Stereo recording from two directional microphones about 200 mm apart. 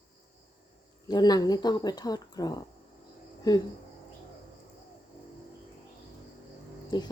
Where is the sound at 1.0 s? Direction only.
20° left (ahead or behind).